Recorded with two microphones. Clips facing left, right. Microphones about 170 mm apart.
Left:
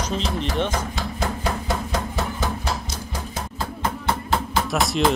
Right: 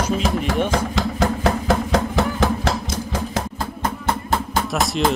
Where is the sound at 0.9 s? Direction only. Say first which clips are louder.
Right 6 dB; 90° right.